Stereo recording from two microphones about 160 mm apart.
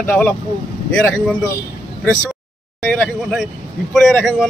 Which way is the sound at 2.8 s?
Centre (ahead or behind).